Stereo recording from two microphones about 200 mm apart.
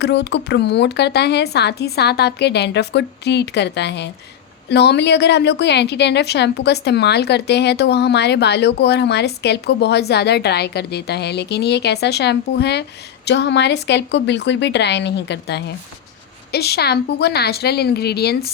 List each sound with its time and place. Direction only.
0.0 s a woman's voice: 60° left (ahead or behind)